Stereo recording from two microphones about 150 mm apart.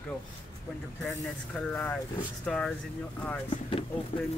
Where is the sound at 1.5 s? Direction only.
5° left (ahead or behind).